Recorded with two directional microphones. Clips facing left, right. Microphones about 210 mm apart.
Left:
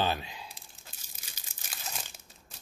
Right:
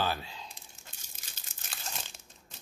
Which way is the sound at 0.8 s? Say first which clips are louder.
Even; 10° left (ahead or behind).